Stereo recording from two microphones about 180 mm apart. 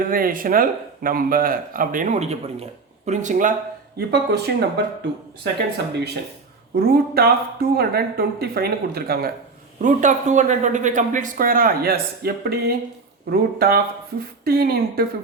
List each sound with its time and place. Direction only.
0.0 s a man's voice: 50° right (ahead or behind)
3.9 s speech: 65° right (ahead or behind)
9.8 s a man's voice: 45° right (ahead or behind); by 15.0 s 60° right (ahead or behind)